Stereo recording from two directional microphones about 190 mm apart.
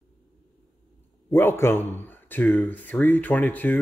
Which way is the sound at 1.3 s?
10° left (ahead or behind).